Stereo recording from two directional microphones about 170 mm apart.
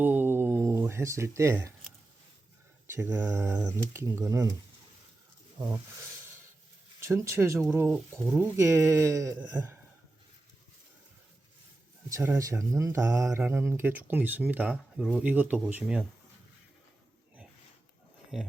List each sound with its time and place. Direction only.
0.0 s a sound: 10° right (ahead or behind)
2.8 s speech: 15° right (ahead or behind)
5.5 s speech: 20° right (ahead or behind)
7.0 s speech: 15° right (ahead or behind)
12.0 s speech: 15° right (ahead or behind)
18.3 s speech: centre (ahead or behind)